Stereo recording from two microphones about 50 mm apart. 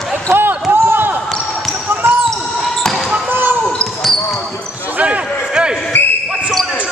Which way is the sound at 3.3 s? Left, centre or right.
Right.